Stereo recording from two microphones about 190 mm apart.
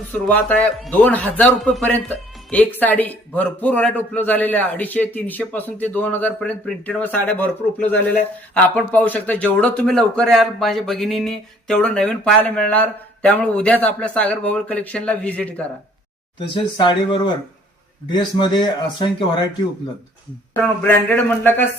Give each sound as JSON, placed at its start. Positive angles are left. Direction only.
{"t": 0.1, "sound": "a man's voice", "side_deg": 10}
{"t": 16.6, "sound": "a man's voice", "side_deg": 25}
{"t": 20.8, "sound": "a man's voice", "side_deg": 10}